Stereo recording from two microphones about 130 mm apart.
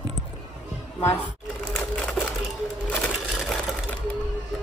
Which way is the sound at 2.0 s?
5° left (ahead or behind).